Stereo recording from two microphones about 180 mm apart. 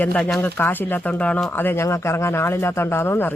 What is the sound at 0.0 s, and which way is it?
Speech, 5° left (ahead or behind).